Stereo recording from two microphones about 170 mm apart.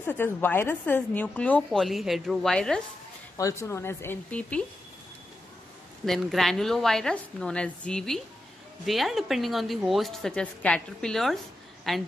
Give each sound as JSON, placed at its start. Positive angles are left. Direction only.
{"t": 0.0, "sound": "a woman's voice", "side_deg": 10}
{"t": 3.3, "sound": "a woman's voice", "side_deg": 15}
{"t": 6.0, "sound": "a woman's voice", "side_deg": 0}